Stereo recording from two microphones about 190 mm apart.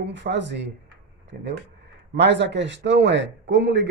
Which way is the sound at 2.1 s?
65° right (ahead or behind).